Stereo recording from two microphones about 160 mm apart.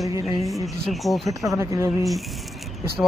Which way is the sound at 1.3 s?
20° right (ahead or behind).